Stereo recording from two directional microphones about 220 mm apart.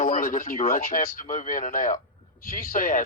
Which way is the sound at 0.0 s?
35° left (ahead or behind).